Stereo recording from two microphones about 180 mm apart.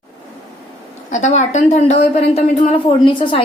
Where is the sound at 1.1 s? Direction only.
40° left (ahead or behind).